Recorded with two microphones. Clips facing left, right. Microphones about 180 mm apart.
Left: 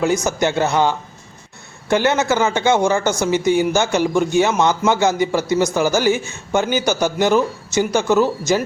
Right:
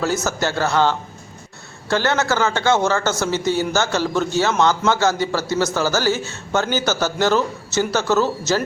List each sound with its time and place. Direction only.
0.3 s speech: 20° left (ahead or behind)